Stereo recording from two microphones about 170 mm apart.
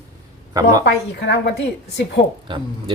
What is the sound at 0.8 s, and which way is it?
Speech, 85° left.